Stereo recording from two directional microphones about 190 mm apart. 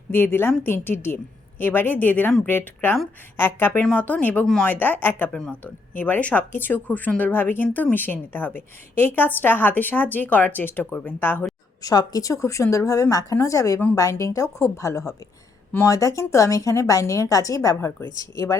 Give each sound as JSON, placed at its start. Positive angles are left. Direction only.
{"t": 0.1, "sound": "a woman's voice", "side_deg": 10}